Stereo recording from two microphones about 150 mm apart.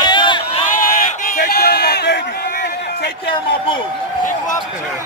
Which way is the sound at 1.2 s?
70° left (ahead or behind).